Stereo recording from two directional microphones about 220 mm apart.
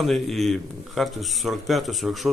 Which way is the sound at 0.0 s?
Centre (ahead or behind).